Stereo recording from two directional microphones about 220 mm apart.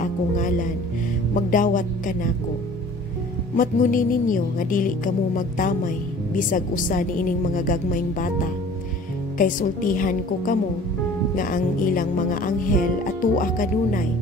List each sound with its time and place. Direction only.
0.0 s a woman's voice: 35° left (ahead or behind)
3.5 s a woman's voice: 35° left (ahead or behind)
9.4 s a woman's voice: 40° left (ahead or behind)